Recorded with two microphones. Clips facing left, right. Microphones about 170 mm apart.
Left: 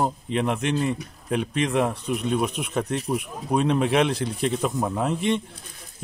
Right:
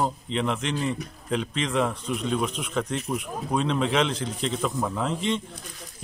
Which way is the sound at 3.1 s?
55° left (ahead or behind).